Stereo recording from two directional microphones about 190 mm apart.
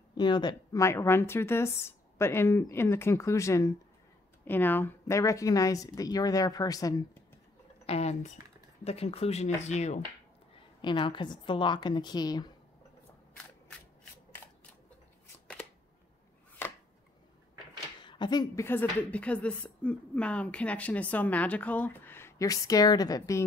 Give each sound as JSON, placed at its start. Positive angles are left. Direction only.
{"t": 0.1, "sound": "a woman's voice", "side_deg": 25}
{"t": 7.8, "sound": "speech", "side_deg": 35}
{"t": 10.8, "sound": "a woman's voice", "side_deg": 25}
{"t": 18.0, "sound": "a woman's voice", "side_deg": 25}